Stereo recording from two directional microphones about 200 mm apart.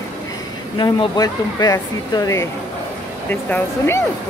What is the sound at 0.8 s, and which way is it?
Speech, 20° left (ahead or behind).